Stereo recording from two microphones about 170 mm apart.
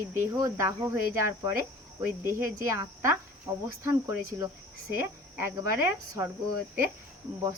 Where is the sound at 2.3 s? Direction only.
15° right (ahead or behind).